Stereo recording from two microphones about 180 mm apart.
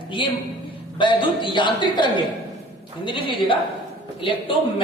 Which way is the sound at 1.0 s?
25° left (ahead or behind).